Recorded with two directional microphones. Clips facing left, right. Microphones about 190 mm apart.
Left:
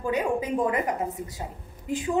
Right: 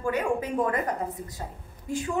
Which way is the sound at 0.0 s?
15° left (ahead or behind).